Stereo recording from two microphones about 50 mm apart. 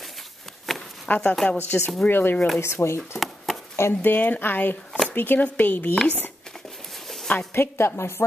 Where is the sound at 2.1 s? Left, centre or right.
Left.